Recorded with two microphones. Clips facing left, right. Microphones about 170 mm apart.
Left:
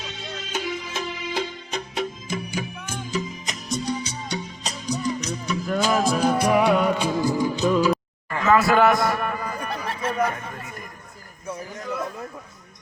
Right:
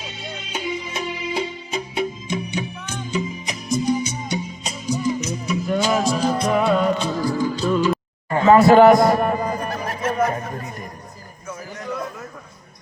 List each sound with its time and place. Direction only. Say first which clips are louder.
0.2 s music: even; centre (ahead or behind)
2.6 s music: right 2 dB; 5° left (ahead or behind)
8.3 s a sound: right 7 dB; 30° right (ahead or behind)
9.9 s snicker: right 3 dB; 30° left (ahead or behind)
10.2 s chatter: right 4 dB; 30° right (ahead or behind)